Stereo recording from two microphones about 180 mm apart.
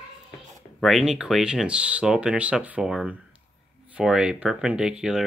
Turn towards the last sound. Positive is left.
turn(degrees=-5)  # may be behind; listen again after turning